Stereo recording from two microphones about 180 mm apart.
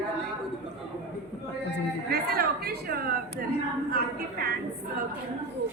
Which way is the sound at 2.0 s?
60° right (ahead or behind).